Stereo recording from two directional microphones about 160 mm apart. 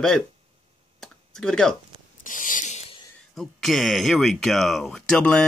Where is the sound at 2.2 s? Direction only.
55° left (ahead or behind).